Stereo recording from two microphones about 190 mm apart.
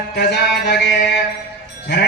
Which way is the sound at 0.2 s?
65° left (ahead or behind).